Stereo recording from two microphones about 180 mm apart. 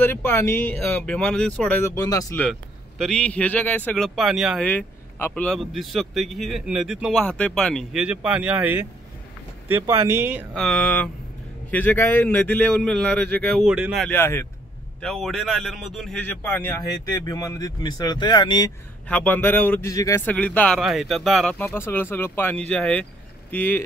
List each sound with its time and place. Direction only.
0.0 s a man's voice: 10° left (ahead or behind)
1.9 s speech: 20° left (ahead or behind)
3.0 s a man's voice: 5° left (ahead or behind)
4.6 s a man's voice: 10° left (ahead or behind); by 10.4 s 10° right (ahead or behind)
10.5 s a man's voice: 5° left (ahead or behind)
14.0 s a man's voice: 15° left (ahead or behind)
15.0 s a man's voice: centre (ahead or behind); by 18.7 s 25° left (ahead or behind)
19.0 s a man's voice: 10° left (ahead or behind)